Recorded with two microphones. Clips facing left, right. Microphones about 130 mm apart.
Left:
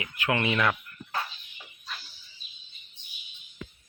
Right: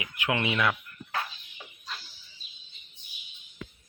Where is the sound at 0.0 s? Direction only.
15° right (ahead or behind).